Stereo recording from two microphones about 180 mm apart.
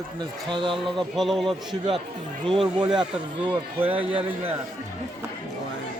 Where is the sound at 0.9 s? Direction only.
Centre (ahead or behind).